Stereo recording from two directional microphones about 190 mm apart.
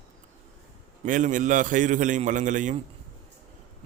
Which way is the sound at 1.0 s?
40° right (ahead or behind).